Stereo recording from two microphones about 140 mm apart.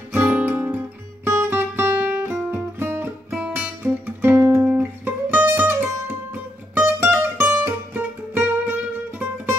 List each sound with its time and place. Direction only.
0.1 s guitar: 15° right (ahead or behind)
6.7 s music: 15° right (ahead or behind)